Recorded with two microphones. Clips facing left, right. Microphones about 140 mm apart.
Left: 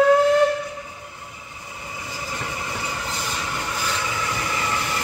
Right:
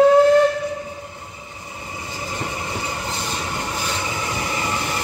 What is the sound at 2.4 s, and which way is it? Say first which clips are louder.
Train: right 3 dB; 25° right (ahead or behind).